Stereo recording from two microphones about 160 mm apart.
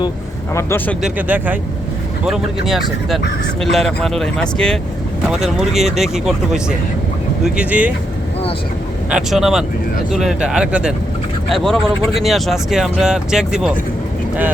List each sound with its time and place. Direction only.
0.5 s speech: 15° left (ahead or behind)
1.0 s speech: 10° right (ahead or behind)
2.6 s speech: centre (ahead or behind)
9.0 s speech: 5° right (ahead or behind)